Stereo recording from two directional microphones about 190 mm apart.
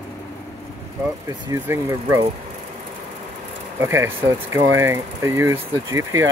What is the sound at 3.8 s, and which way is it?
Speech, 15° right (ahead or behind).